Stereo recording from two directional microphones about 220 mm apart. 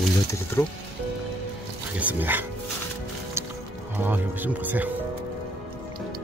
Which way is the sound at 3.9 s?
10° right (ahead or behind).